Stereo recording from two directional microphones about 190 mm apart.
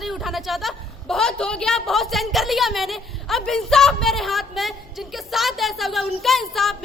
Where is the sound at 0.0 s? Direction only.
Centre (ahead or behind).